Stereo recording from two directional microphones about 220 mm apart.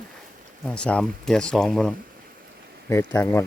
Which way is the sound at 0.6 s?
5° left (ahead or behind).